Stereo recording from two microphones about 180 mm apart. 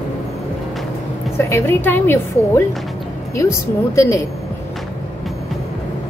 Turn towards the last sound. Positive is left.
turn(degrees=15)  # may be behind; listen again after turning